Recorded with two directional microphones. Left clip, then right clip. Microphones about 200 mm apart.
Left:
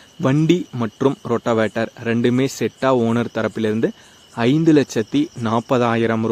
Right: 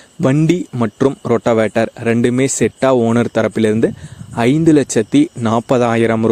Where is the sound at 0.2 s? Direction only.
30° right (ahead or behind).